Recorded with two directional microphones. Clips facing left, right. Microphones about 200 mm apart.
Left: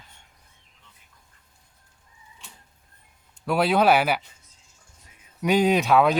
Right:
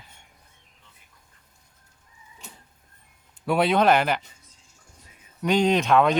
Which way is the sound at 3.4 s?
Centre (ahead or behind).